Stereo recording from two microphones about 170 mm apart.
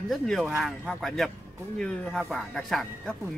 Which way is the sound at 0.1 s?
Centre (ahead or behind).